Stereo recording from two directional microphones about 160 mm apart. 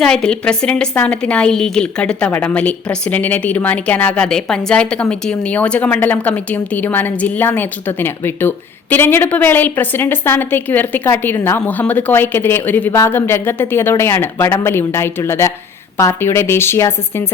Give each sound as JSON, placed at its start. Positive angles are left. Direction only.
{"t": 0.0, "sound": "a woman's voice", "side_deg": 5}